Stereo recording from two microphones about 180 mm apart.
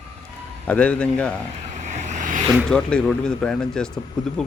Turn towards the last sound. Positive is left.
turn(degrees=5)  # may be behind; listen again after turning